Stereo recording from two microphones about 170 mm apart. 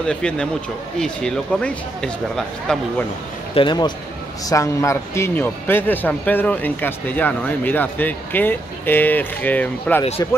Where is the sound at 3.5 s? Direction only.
25° left (ahead or behind).